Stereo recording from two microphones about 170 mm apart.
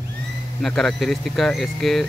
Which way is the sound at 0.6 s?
Centre (ahead or behind).